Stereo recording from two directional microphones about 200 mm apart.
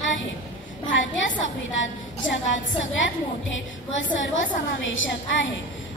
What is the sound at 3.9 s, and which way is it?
A woman's voice, 70° left (ahead or behind).